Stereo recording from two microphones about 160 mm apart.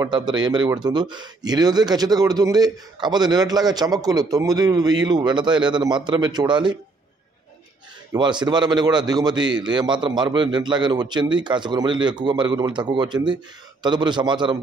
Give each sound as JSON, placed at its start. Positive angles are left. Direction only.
{"t": 0.0, "sound": "speech", "side_deg": -25}
{"t": 8.1, "sound": "speech", "side_deg": -30}